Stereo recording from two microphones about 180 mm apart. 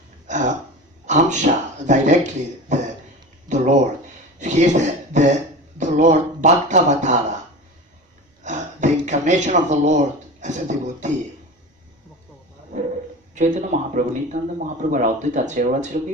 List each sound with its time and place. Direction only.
0.3 s throat clearing: 40° right (ahead or behind)
1.0 s speech: 40° right (ahead or behind)
4.4 s speech: 40° right (ahead or behind)
8.4 s speech: 40° right (ahead or behind)
12.7 s a sound: 40° right (ahead or behind)
13.3 s speech: 40° right (ahead or behind)